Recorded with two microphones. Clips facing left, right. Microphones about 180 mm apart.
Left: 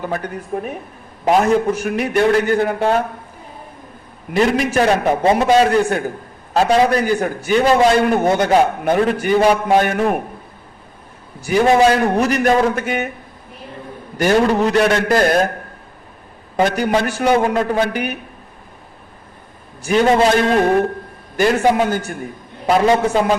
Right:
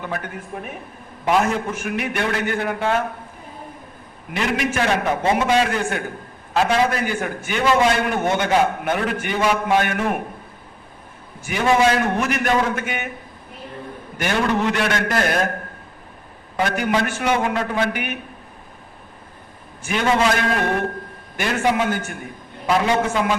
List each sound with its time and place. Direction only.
0.0 s a man's voice: 35° left (ahead or behind)
4.4 s a man's voice: 35° left (ahead or behind)
11.3 s a man's voice: 35° left (ahead or behind)
14.2 s a man's voice: 40° left (ahead or behind)
16.6 s a man's voice: 40° left (ahead or behind)
19.8 s a man's voice: 35° left (ahead or behind)